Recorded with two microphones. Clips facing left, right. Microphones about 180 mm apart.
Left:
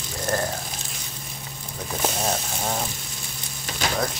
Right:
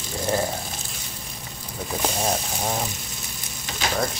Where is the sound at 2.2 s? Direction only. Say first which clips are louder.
Right 1 dB; 5° right (ahead or behind).